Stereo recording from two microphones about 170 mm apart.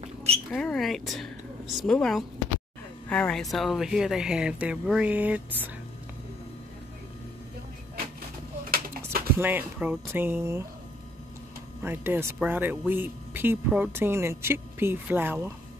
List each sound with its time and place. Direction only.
0.5 s speech: 5° left (ahead or behind)
8.6 s a sound: 60° right (ahead or behind)
9.4 s speech: 10° right (ahead or behind)
11.8 s speech: 10° right (ahead or behind)